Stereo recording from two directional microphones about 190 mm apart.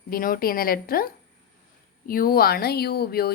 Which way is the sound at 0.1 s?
50° left (ahead or behind).